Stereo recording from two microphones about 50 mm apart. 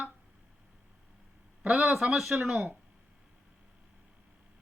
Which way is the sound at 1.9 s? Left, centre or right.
Centre.